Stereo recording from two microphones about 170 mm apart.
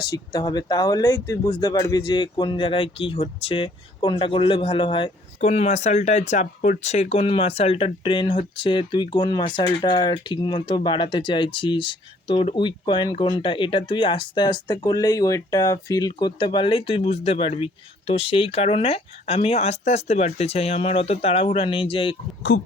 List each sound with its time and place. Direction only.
0.1 s speech: 25° left (ahead or behind)
5.4 s speech: 40° left (ahead or behind)
22.5 s speech: 90° left